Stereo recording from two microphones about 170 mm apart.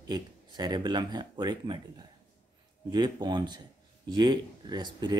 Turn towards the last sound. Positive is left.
turn(degrees=-25)  # may be behind; listen again after turning